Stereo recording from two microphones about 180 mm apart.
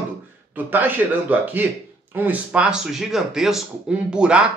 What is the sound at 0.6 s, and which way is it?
A man's voice, 10° right (ahead or behind).